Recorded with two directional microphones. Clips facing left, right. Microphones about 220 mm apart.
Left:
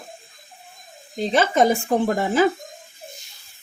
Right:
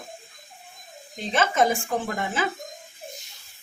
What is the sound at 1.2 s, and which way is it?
Speech, 35° left (ahead or behind).